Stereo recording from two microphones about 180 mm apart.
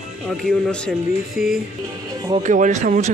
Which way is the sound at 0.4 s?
5° left (ahead or behind).